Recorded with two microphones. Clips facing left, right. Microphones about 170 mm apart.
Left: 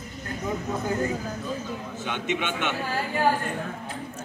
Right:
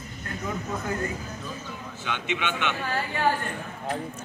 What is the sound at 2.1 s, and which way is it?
Speech, 45° left (ahead or behind).